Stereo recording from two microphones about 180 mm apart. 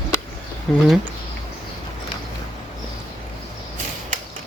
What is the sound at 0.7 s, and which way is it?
Speech, 5° left (ahead or behind).